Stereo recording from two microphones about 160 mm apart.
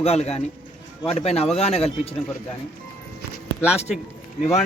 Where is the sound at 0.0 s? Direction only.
40° left (ahead or behind).